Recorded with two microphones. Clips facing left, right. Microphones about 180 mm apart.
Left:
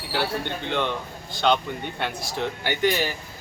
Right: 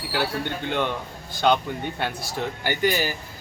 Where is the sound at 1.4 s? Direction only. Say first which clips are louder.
Right 1 dB; 5° right (ahead or behind).